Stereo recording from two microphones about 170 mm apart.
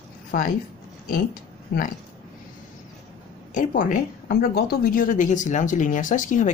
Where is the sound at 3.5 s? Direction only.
50° left (ahead or behind).